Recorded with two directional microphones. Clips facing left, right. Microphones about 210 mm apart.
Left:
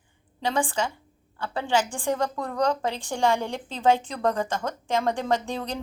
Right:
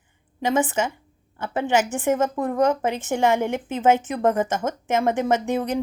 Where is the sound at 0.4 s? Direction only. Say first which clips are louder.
Right 4 dB; 20° right (ahead or behind).